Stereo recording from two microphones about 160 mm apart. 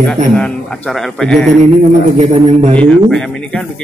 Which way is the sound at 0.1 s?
Centre (ahead or behind).